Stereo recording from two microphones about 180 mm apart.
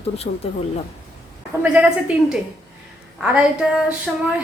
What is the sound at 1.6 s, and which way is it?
A woman's voice, 5° right (ahead or behind).